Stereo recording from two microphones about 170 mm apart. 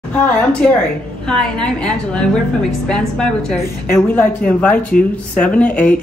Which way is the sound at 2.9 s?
5° left (ahead or behind).